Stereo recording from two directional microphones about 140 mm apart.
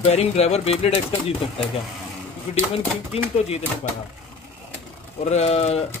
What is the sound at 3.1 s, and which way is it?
Speech, 45° left (ahead or behind).